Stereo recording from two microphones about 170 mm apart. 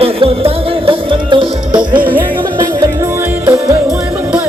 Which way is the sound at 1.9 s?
10° right (ahead or behind).